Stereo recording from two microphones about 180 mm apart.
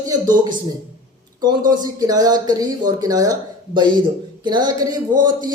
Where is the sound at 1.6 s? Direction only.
20° right (ahead or behind).